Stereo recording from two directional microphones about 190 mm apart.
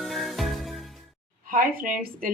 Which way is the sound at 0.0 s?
Centre (ahead or behind).